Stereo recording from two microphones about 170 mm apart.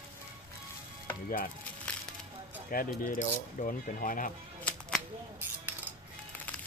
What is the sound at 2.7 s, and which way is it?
Speech, 55° left (ahead or behind).